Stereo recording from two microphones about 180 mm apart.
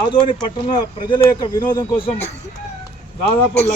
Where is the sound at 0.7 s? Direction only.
25° left (ahead or behind).